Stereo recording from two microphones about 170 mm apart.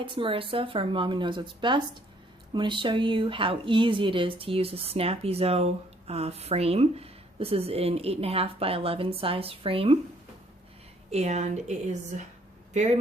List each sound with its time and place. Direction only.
0.0 s speech: 30° right (ahead or behind)
11.1 s a woman's voice: 40° right (ahead or behind)